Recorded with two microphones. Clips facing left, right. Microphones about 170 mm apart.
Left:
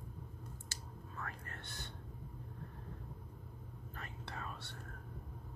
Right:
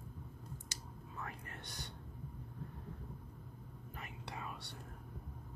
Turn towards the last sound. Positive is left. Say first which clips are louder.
# even
turn(degrees=-15)  # may be behind; listen again after turning